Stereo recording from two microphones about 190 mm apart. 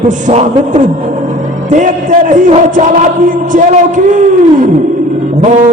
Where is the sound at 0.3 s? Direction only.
40° right (ahead or behind).